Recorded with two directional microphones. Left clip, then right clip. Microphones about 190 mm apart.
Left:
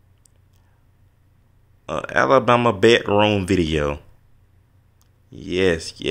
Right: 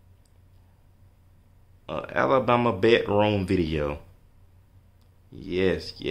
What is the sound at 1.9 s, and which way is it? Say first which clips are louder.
Speech: left 6 dB; 30° left (ahead or behind).